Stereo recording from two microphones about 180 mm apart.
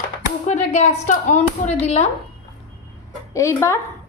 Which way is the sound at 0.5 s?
40° left (ahead or behind).